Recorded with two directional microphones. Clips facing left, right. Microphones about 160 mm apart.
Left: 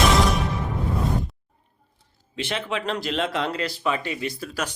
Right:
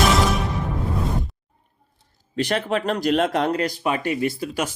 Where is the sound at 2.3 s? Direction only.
45° right (ahead or behind).